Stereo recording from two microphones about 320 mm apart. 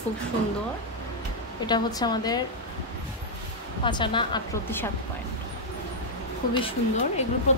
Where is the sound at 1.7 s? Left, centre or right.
Centre.